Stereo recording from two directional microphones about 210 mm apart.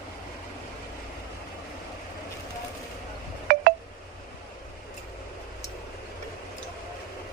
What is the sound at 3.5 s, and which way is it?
Telephone dialing, 45° right (ahead or behind).